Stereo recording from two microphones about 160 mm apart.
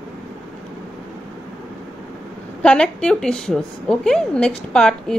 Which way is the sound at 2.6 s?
5° left (ahead or behind).